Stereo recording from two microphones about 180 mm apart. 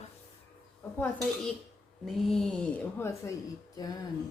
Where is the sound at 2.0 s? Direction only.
Centre (ahead or behind).